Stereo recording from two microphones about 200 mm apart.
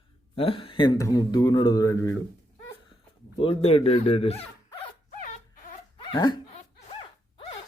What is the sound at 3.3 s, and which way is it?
Speech, 25° left (ahead or behind).